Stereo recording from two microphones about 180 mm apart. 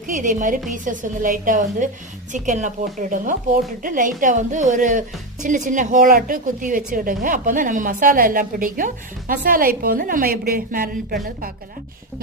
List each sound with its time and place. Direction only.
0.1 s a woman's voice: 45° right (ahead or behind)